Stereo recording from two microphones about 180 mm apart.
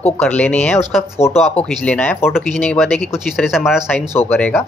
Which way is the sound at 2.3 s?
Centre (ahead or behind).